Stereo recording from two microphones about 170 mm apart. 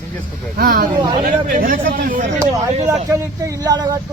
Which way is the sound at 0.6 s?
60° right (ahead or behind).